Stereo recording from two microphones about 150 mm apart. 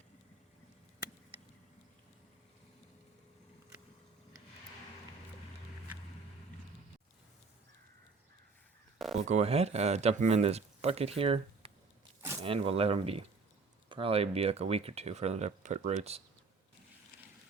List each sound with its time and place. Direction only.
9.1 s speech: 45° right (ahead or behind)